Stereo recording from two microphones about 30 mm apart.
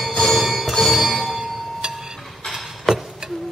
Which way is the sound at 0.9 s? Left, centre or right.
Centre.